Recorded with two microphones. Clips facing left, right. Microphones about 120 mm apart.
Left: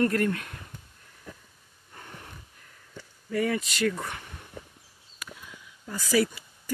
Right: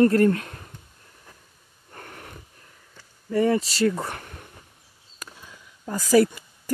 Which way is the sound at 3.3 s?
35° right (ahead or behind).